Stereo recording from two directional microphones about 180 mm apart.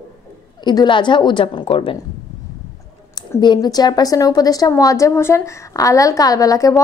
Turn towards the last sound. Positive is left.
turn(degrees=20)  # may be behind; listen again after turning